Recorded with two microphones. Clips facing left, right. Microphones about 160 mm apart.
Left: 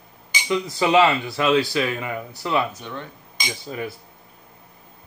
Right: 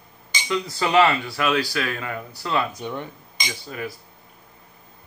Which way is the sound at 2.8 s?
15° right (ahead or behind).